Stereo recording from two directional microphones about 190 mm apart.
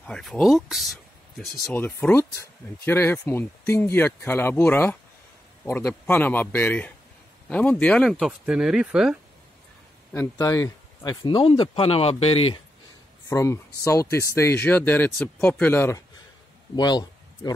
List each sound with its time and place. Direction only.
0.0 s speech: 5° left (ahead or behind)
1.7 s speech: 10° left (ahead or behind)
10.1 s speech: 15° left (ahead or behind); by 12.4 s 30° left (ahead or behind)
13.3 s speech: 15° left (ahead or behind)
16.7 s speech: 20° left (ahead or behind)